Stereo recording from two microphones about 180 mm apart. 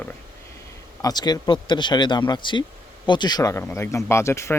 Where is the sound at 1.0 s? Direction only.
20° left (ahead or behind).